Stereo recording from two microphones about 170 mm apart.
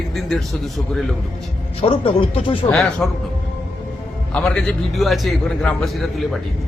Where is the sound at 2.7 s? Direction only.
Centre (ahead or behind).